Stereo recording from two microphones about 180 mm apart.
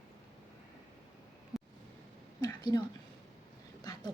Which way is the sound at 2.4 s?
20° left (ahead or behind).